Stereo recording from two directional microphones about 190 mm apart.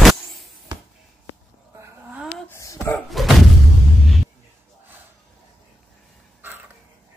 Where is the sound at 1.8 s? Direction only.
10° right (ahead or behind).